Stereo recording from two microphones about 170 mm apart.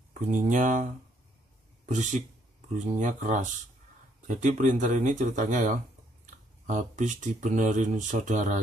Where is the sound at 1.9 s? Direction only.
45° right (ahead or behind).